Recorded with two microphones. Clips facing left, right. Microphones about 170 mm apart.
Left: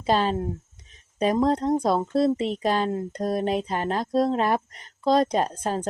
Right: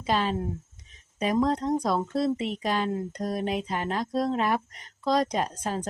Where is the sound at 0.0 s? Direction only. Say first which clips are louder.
Left 4 dB; 35° left (ahead or behind).